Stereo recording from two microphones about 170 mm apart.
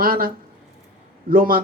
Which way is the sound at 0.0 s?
60° right (ahead or behind).